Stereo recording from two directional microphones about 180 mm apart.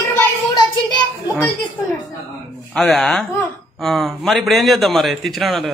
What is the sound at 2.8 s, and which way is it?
A man's voice, centre (ahead or behind).